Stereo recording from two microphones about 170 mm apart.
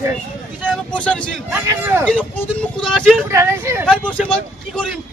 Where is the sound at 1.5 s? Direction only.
15° right (ahead or behind).